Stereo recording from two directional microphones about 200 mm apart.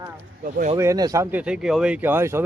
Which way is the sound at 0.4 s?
45° right (ahead or behind).